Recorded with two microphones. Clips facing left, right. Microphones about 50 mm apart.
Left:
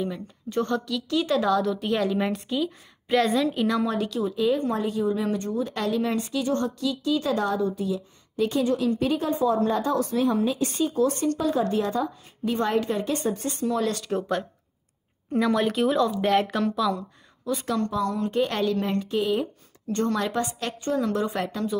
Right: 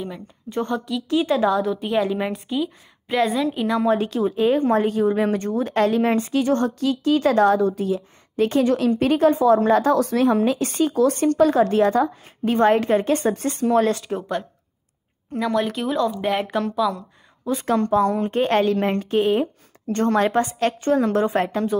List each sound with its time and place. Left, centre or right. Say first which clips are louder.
0.0 s a woman's voice: left 2 dB; centre
3.8 s speech: right 6 dB; right
11.3 s speech: right 8 dB; right
13.8 s speech: right 6 dB; right
15.3 s a woman's voice: even; centre
17.6 s a woman's voice: right 8 dB; right